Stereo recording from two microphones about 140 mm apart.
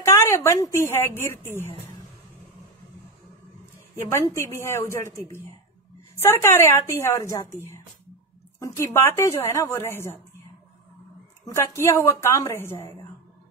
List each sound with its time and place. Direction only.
0.0 s a woman's voice: 20° left (ahead or behind)
4.3 s speech: 20° left (ahead or behind)
8.5 s speech: 20° left (ahead or behind)
11.4 s speech: 20° left (ahead or behind)